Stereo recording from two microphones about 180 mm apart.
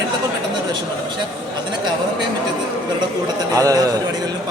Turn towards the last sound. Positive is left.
turn(degrees=-20)  # may be behind; listen again after turning